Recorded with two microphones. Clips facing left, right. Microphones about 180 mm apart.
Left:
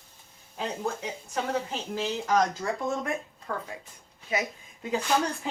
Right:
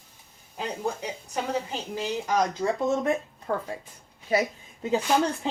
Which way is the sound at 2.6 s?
25° right (ahead or behind).